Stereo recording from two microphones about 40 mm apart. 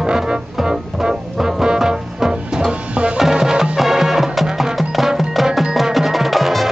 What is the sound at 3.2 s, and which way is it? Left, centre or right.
Music, centre.